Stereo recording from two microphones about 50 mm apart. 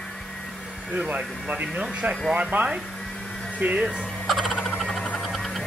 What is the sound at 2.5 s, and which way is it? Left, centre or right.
Speech, right.